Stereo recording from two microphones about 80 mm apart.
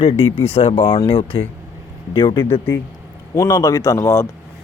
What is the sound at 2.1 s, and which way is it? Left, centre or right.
Speech, left.